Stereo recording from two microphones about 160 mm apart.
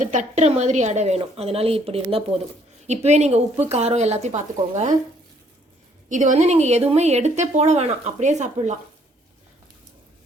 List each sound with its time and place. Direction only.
0.0 s speech: 50° right (ahead or behind)
6.1 s speech: 50° right (ahead or behind)